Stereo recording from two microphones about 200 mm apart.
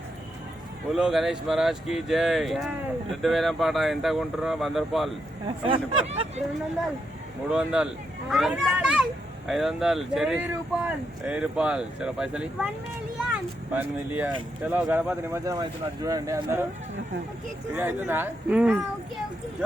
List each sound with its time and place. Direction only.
0.9 s speech: centre (ahead or behind)
5.5 s speech: 25° right (ahead or behind)
7.4 s speech: 5° right (ahead or behind)
13.7 s speech: 10° right (ahead or behind)
17.7 s speech: 10° right (ahead or behind)